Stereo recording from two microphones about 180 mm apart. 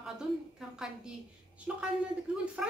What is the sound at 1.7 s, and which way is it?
A woman's voice, 5° right (ahead or behind).